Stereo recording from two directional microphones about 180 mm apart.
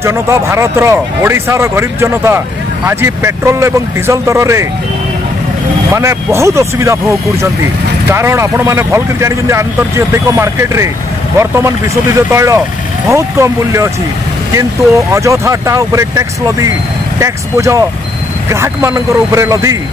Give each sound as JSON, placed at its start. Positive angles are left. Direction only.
{"t": 0.0, "sound": "speech", "side_deg": -15}
{"t": 5.9, "sound": "speech", "side_deg": -15}